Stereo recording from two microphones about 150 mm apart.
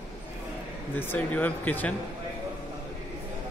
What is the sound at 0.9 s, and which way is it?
A man's voice, 10° left (ahead or behind).